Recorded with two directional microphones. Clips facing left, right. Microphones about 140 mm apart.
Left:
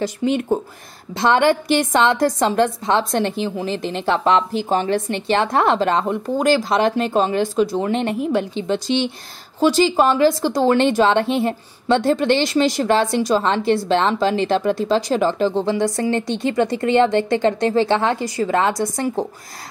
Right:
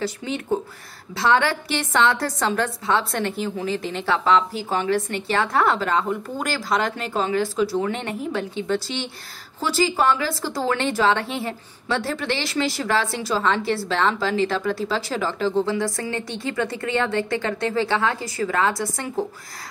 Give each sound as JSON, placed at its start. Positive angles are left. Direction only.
{"t": 1.1, "sound": "a woman's voice", "side_deg": 20}